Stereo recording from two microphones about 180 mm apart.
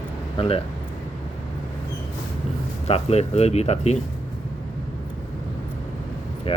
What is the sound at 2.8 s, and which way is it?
Speech, 35° left (ahead or behind).